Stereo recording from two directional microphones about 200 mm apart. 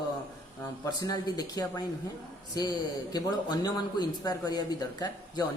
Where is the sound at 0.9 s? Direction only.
20° left (ahead or behind).